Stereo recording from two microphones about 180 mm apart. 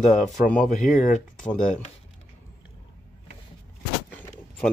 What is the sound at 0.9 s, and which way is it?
Speech, 45° left (ahead or behind).